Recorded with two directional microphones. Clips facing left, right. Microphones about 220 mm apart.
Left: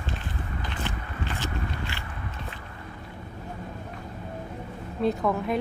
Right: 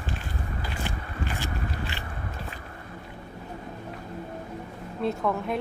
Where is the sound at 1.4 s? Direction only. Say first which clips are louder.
Even; 15° right (ahead or behind).